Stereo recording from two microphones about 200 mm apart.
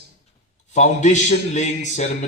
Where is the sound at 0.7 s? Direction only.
35° left (ahead or behind).